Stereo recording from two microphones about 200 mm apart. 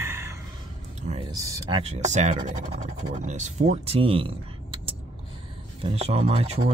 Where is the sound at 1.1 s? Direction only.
35° right (ahead or behind).